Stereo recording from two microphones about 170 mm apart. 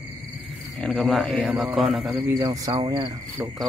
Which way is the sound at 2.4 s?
20° right (ahead or behind).